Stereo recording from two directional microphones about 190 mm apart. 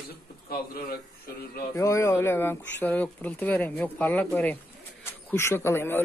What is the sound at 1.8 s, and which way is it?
Speech, 15° left (ahead or behind).